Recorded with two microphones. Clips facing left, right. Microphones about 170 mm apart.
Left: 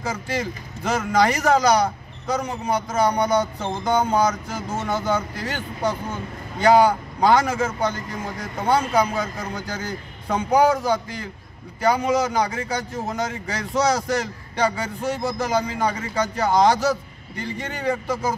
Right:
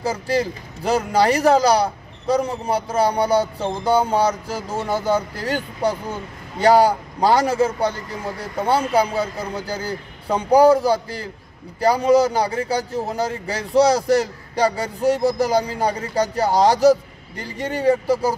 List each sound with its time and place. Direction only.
0.0 s a man's voice: 35° right (ahead or behind)